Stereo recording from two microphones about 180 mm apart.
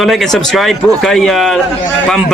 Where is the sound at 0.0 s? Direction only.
Centre (ahead or behind).